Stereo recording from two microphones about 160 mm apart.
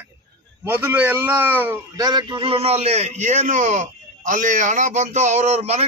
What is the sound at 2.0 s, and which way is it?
A man's voice, 25° right (ahead or behind).